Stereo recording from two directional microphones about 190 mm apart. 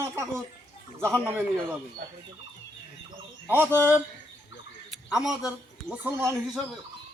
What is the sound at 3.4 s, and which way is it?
Speech, 10° right (ahead or behind).